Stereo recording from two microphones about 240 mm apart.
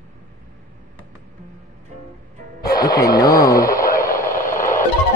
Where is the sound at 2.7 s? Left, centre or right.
Centre.